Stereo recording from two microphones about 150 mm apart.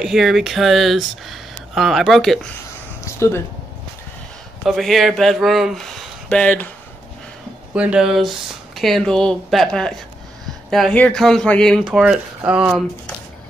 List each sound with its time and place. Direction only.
0.0 s speech: 5° right (ahead or behind)
3.1 s speech: 15° left (ahead or behind)
4.6 s speech: centre (ahead or behind)
6.2 s speech: 10° left (ahead or behind)
7.7 s speech: 10° right (ahead or behind)
11.8 s speech: 5° right (ahead or behind)